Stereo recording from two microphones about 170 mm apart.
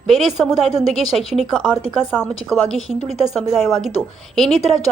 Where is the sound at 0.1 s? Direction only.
Centre (ahead or behind).